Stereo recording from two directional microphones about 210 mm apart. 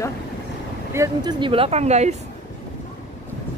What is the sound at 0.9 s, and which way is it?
Speech, 15° right (ahead or behind).